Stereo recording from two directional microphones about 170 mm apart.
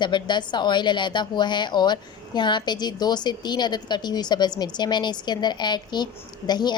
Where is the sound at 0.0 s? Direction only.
25° left (ahead or behind).